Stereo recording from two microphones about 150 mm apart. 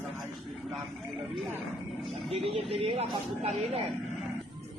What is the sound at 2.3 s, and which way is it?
Speech, 40° right (ahead or behind).